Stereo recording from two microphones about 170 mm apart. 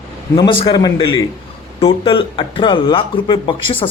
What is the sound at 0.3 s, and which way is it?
Speech, 30° left (ahead or behind).